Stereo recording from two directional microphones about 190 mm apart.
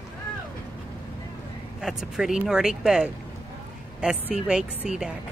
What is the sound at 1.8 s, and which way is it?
Speech, centre (ahead or behind).